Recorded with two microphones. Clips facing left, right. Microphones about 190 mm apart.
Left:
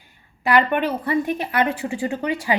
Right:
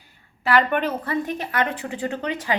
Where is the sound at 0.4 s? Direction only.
15° left (ahead or behind).